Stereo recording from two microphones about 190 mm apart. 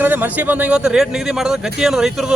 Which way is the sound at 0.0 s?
10° right (ahead or behind).